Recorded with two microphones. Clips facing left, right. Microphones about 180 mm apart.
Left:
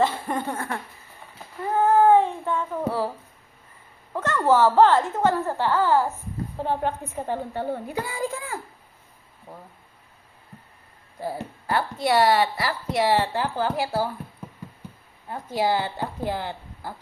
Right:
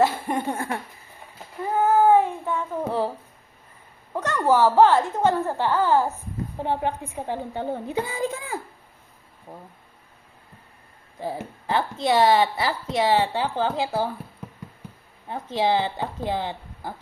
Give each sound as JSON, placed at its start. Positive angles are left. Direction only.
{"t": 0.0, "sound": "a woman's voice", "side_deg": -10}
{"t": 0.3, "sound": "a woman's voice", "side_deg": -20}
{"t": 1.7, "sound": "child singing", "side_deg": -5}
{"t": 4.1, "sound": "a woman's voice", "side_deg": -15}
{"t": 11.2, "sound": "a woman's voice", "side_deg": -20}
{"t": 15.3, "sound": "a woman's voice", "side_deg": -20}